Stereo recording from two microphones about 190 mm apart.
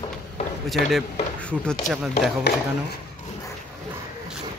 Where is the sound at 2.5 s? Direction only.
65° left (ahead or behind).